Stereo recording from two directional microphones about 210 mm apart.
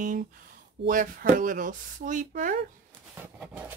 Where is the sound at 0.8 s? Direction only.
40° right (ahead or behind).